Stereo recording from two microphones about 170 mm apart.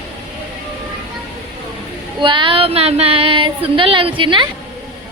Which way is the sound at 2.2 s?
30° right (ahead or behind).